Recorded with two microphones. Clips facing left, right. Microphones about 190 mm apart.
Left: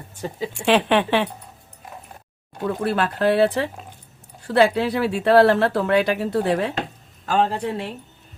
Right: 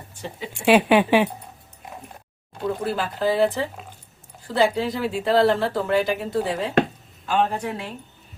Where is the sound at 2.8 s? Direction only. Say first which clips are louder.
Left 5 dB; 70° left (ahead or behind).